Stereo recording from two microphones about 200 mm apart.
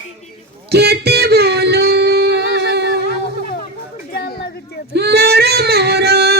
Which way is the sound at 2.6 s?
60° right (ahead or behind).